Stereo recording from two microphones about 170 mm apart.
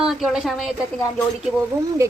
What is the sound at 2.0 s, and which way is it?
Speech, 20° right (ahead or behind).